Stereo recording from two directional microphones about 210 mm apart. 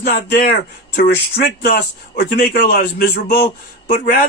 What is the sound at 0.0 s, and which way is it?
A man's voice, 45° left (ahead or behind).